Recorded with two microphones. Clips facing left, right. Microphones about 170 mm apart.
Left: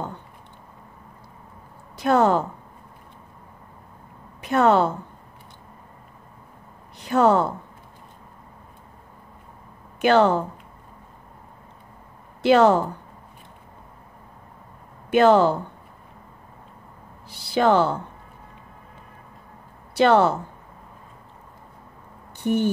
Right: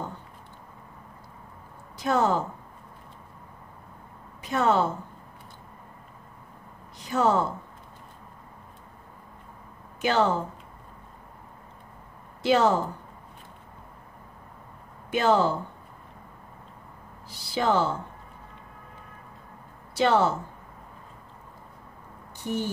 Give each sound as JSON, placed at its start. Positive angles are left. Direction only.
{"t": 2.0, "sound": "a woman's voice", "side_deg": 60}
{"t": 4.4, "sound": "a woman's voice", "side_deg": 60}
{"t": 7.0, "sound": "a woman's voice", "side_deg": 60}
{"t": 10.0, "sound": "a woman's voice", "side_deg": 60}
{"t": 12.4, "sound": "a woman's voice", "side_deg": 65}
{"t": 15.0, "sound": "speech", "side_deg": 65}
{"t": 17.3, "sound": "a woman's voice", "side_deg": 65}
{"t": 19.9, "sound": "speech", "side_deg": 60}
{"t": 22.4, "sound": "speech", "side_deg": 60}